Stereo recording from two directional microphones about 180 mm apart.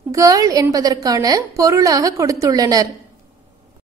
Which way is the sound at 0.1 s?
20° right (ahead or behind).